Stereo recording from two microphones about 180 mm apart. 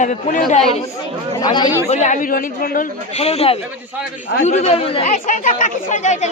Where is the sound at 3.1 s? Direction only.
35° left (ahead or behind).